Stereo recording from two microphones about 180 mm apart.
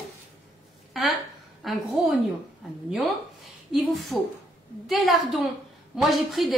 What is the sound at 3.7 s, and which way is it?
A woman's voice, centre (ahead or behind).